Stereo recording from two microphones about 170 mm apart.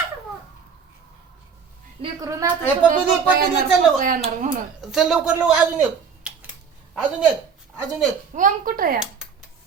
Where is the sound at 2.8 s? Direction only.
50° right (ahead or behind).